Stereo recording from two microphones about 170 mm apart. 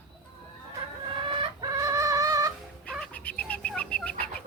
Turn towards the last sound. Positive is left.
turn(degrees=10)  # may be behind; listen again after turning